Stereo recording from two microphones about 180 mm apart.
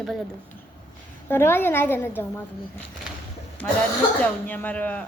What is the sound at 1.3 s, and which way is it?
Speech, 10° left (ahead or behind).